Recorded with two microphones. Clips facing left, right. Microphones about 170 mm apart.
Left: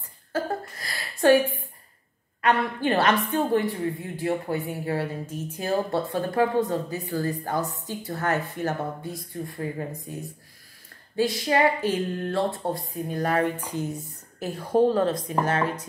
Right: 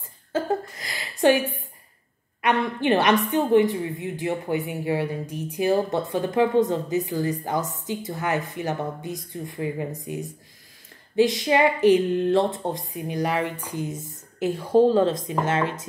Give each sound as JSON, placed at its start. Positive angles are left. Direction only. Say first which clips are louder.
{"t": 0.3, "sound": "a sound", "louder": "right 3 dB", "side_deg": -20}
{"t": 2.4, "sound": "a woman's voice", "louder": "right 1 dB", "side_deg": -20}
{"t": 14.4, "sound": "speech", "louder": "right 3 dB", "side_deg": -30}